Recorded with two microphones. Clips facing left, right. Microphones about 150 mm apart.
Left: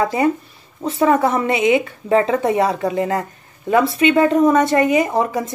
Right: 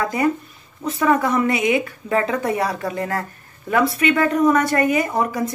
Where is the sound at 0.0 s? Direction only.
25° left (ahead or behind).